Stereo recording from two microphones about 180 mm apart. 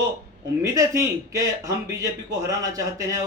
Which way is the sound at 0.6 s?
15° right (ahead or behind).